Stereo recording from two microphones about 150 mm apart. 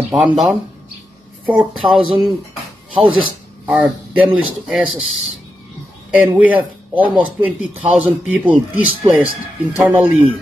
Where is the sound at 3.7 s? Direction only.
5° right (ahead or behind).